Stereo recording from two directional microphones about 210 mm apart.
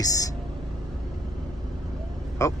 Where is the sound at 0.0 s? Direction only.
15° left (ahead or behind).